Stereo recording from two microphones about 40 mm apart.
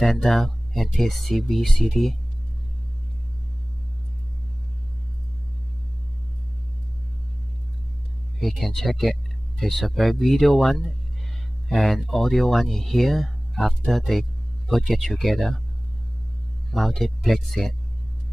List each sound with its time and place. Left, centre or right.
0.0 s speech: centre
8.4 s speech: centre
16.7 s speech: centre